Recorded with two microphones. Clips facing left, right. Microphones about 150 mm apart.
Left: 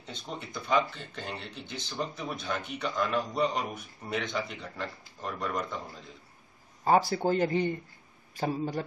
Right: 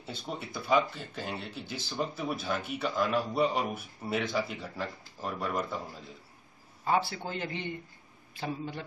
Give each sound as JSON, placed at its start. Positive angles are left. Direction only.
{"t": 0.0, "sound": "speech", "side_deg": -5}
{"t": 6.8, "sound": "speech", "side_deg": 40}